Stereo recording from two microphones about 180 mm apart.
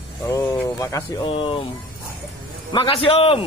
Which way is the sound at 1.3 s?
30° left (ahead or behind).